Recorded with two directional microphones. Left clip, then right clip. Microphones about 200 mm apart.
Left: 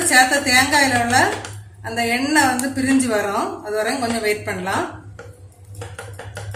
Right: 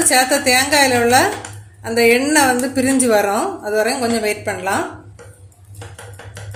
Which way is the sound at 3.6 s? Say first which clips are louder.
Right 4 dB; 40° right (ahead or behind).